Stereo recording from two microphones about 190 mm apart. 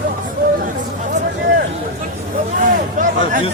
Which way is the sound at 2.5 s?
45° right (ahead or behind).